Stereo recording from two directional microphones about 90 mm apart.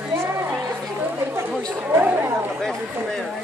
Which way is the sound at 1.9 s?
25° right (ahead or behind).